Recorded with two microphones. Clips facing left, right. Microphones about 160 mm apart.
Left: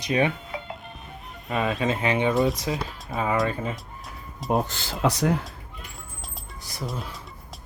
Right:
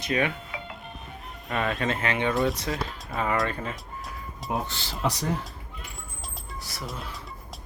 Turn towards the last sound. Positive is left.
turn(degrees=0)  # may be behind; listen again after turning